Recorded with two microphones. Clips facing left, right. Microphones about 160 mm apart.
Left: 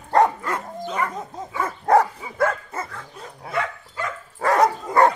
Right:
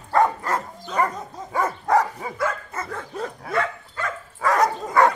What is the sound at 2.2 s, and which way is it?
Dog, 50° right (ahead or behind).